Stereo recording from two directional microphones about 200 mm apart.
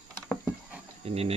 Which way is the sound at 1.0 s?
30° right (ahead or behind).